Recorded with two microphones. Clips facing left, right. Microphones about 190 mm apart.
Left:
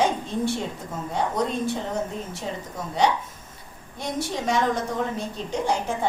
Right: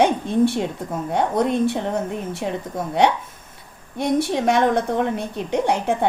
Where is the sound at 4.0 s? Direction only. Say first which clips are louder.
Right 8 dB; 60° right (ahead or behind).